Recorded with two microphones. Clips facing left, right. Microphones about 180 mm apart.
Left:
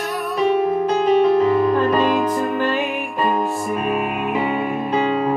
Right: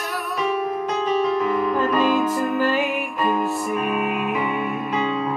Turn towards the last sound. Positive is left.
turn(degrees=40)  # may be behind; listen again after turning